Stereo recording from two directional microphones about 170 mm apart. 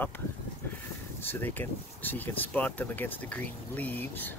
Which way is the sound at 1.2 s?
10° left (ahead or behind).